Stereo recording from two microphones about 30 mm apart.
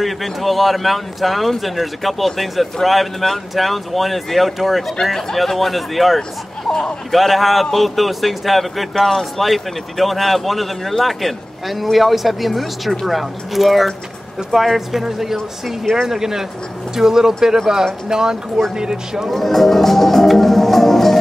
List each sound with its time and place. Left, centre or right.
0.0 s a man's voice: centre
15.8 s a man's voice: centre
16.1 s speech: centre
19.3 s music: centre